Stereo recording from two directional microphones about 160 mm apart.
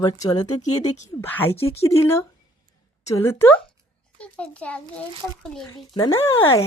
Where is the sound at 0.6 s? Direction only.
50° left (ahead or behind).